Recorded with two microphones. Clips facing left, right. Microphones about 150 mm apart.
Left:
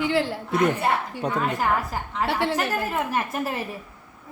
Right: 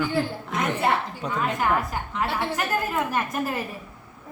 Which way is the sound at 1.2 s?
35° left (ahead or behind).